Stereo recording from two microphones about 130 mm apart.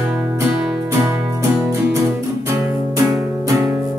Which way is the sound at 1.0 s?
20° right (ahead or behind).